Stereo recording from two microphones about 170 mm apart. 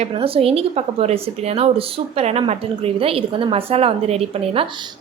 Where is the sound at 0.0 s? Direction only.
35° right (ahead or behind).